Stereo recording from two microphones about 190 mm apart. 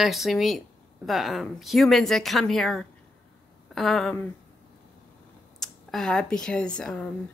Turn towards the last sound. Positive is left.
turn(degrees=5)  # may be behind; listen again after turning